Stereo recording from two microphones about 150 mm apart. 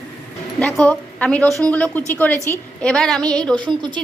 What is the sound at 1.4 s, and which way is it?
Speech, 20° right (ahead or behind).